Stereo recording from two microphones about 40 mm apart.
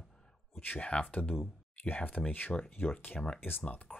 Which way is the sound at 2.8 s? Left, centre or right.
Left.